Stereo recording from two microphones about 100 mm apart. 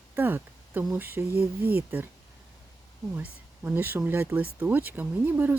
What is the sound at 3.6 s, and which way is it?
Speech, 20° right (ahead or behind).